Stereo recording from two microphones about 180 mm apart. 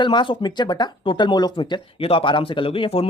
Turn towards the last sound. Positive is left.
turn(degrees=30)  # may be behind; listen again after turning